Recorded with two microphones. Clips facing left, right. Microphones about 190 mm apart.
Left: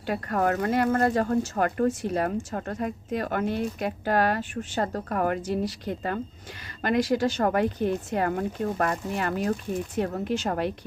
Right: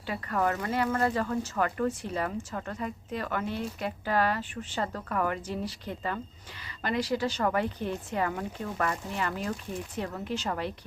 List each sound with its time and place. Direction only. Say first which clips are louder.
0.0 s speech: left 4 dB; 50° left (ahead or behind)